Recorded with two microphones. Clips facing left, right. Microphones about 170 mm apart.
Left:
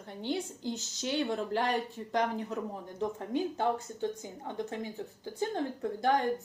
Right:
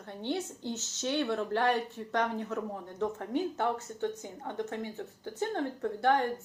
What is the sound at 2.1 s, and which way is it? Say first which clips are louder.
A woman's voice: even; 10° left (ahead or behind).